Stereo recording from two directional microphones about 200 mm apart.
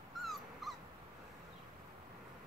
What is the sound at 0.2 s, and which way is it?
Dog, centre (ahead or behind).